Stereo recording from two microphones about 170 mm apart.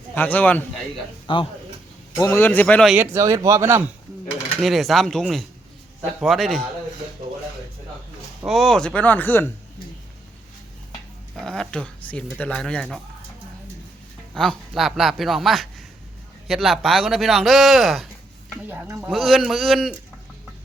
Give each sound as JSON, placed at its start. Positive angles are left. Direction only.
{"t": 0.1, "sound": "speech", "side_deg": 10}
{"t": 1.3, "sound": "speech", "side_deg": 30}
{"t": 2.1, "sound": "speech", "side_deg": 15}
{"t": 2.9, "sound": "speech", "side_deg": -15}
{"t": 4.6, "sound": "speech", "side_deg": 0}
{"t": 8.4, "sound": "speech", "side_deg": 0}
{"t": 11.3, "sound": "speech", "side_deg": 5}
{"t": 14.3, "sound": "speech", "side_deg": 0}